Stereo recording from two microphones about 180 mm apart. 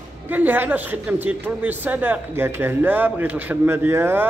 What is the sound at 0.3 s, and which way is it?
Speech, 10° right (ahead or behind).